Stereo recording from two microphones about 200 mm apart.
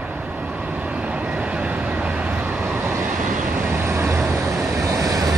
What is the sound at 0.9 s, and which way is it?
Vehicle, 5° right (ahead or behind).